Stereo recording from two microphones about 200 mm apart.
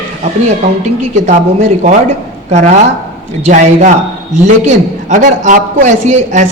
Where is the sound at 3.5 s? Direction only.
40° right (ahead or behind).